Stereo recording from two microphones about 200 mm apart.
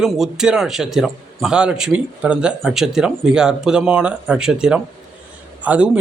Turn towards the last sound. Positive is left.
turn(degrees=-5)  # may be behind; listen again after turning